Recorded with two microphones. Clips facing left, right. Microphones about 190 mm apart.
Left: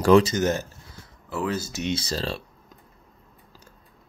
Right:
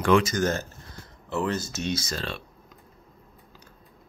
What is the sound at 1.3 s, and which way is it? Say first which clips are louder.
Speech: even; 5° left (ahead or behind).